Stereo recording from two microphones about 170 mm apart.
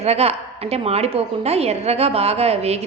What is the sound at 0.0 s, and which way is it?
A woman's voice, 40° right (ahead or behind).